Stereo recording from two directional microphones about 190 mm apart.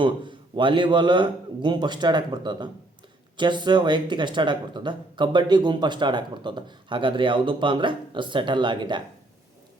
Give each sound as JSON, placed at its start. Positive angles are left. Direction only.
{"t": 0.0, "sound": "speech", "side_deg": -25}